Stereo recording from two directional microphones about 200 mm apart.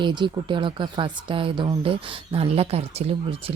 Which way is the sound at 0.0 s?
25° right (ahead or behind).